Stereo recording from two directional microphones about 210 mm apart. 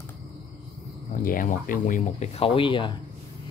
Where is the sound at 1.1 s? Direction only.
40° left (ahead or behind); by 2.9 s 25° left (ahead or behind).